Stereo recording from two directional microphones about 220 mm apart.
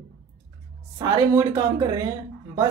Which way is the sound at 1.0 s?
15° right (ahead or behind).